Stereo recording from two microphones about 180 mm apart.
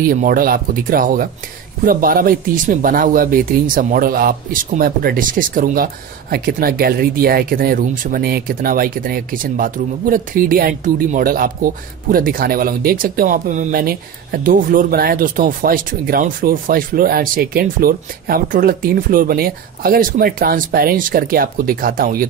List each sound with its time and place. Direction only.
0.0 s speech: 50° right (ahead or behind)